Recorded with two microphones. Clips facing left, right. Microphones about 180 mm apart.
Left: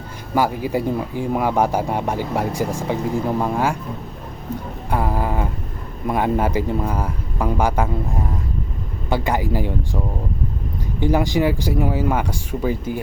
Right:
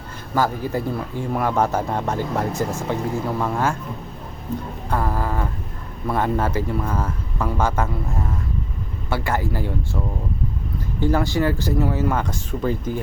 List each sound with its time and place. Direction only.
0.3 s speech: 10° left (ahead or behind)
4.9 s speech: 15° left (ahead or behind)
11.0 s speech: 15° left (ahead or behind)